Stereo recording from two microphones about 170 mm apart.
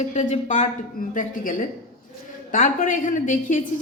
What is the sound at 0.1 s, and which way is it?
A woman's voice, 45° left (ahead or behind).